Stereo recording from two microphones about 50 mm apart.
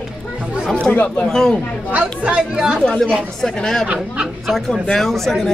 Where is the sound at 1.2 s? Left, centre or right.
Centre.